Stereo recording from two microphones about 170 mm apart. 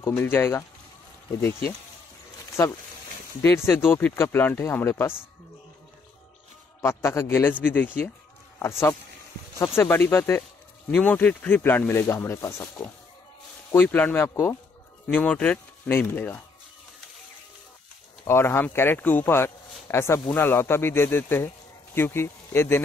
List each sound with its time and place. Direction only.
0.2 s speech: 15° left (ahead or behind)
3.4 s speech: 15° left (ahead or behind)
6.8 s speech: 15° left (ahead or behind)
18.2 s speech: 15° left (ahead or behind)